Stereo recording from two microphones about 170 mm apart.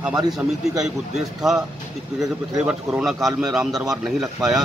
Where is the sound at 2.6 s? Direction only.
5° right (ahead or behind).